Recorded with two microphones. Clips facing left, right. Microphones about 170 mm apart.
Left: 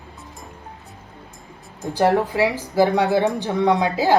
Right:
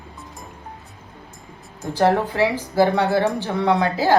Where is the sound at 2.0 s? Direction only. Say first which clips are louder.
Even; centre (ahead or behind).